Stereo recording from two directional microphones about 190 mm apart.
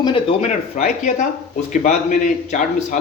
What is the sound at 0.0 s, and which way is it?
Speech, 30° left (ahead or behind).